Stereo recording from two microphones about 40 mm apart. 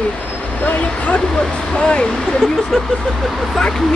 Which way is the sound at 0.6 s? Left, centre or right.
Left.